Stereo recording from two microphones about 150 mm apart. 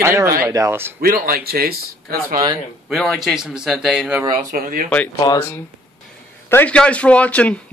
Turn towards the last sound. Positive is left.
turn(degrees=10)  # may be behind; listen again after turning